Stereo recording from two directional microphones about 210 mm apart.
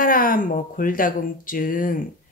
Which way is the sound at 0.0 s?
40° left (ahead or behind).